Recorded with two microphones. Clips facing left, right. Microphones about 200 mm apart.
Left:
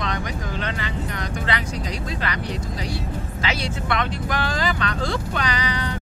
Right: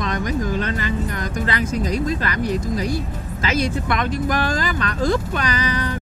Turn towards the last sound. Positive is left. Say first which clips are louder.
# right 5 dB
turn(degrees=-45)  # may be behind; listen again after turning